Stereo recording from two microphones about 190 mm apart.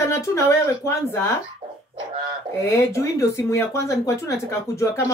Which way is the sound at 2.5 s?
15° left (ahead or behind).